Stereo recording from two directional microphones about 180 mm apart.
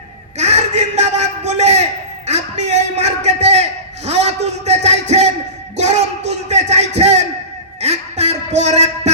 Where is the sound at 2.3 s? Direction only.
40° right (ahead or behind).